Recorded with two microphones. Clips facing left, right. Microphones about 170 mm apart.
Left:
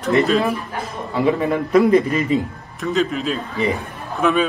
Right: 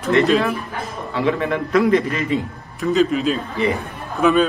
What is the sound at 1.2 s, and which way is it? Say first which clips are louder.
Speech: left 2 dB; 15° left (ahead or behind).